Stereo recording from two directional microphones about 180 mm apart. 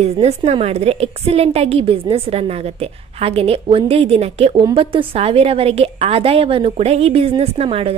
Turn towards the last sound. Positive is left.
turn(degrees=-30)  # may be behind; listen again after turning